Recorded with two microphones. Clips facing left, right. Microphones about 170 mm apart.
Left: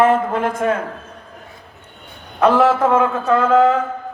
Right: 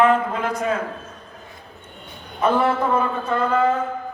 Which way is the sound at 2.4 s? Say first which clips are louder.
Left 5 dB; 85° left.